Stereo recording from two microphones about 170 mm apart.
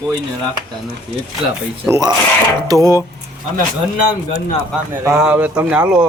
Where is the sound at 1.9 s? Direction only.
20° right (ahead or behind).